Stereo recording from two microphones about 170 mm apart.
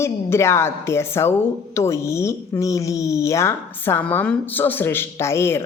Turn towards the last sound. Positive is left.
turn(degrees=15)  # may be behind; listen again after turning